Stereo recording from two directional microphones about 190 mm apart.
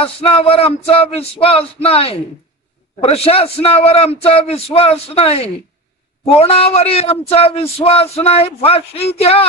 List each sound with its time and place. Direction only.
0.0 s speech: 30° left (ahead or behind)